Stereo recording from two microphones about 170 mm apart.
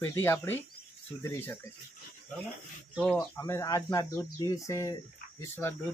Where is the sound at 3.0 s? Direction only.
5° left (ahead or behind).